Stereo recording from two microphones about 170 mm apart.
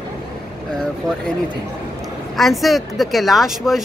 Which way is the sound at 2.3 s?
Centre (ahead or behind).